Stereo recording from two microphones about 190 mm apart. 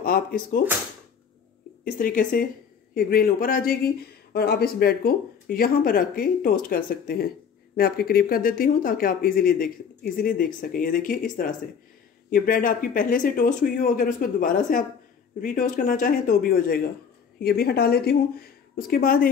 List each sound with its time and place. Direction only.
0.0 s speech: 50° left (ahead or behind)
1.9 s speech: 50° left (ahead or behind)